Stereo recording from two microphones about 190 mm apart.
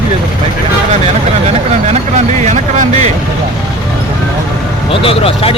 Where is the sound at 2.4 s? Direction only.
40° right (ahead or behind).